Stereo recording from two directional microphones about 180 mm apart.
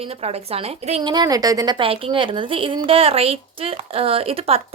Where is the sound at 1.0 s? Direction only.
25° right (ahead or behind).